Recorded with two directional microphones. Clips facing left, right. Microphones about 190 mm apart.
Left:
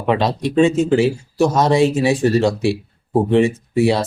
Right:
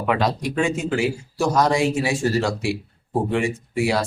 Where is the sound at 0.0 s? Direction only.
25° left (ahead or behind).